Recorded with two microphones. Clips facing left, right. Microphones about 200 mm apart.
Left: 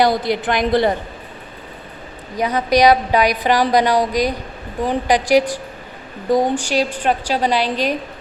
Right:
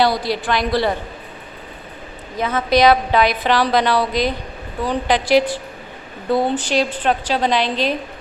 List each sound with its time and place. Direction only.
0.2 s a woman's voice: 20° left (ahead or behind)
2.3 s a woman's voice: 15° left (ahead or behind)